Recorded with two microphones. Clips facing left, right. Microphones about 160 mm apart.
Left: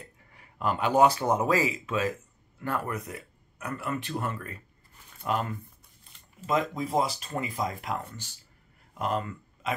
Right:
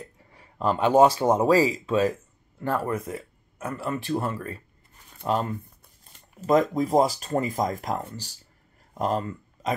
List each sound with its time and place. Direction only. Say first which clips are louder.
0.3 s speech: right 4 dB; 30° right (ahead or behind)
6.1 s speech: right 7 dB; 45° right (ahead or behind)